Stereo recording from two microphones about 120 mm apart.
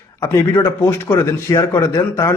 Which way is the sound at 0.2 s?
20° left (ahead or behind).